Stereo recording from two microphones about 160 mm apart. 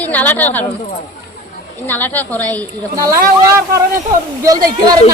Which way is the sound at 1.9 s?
10° left (ahead or behind).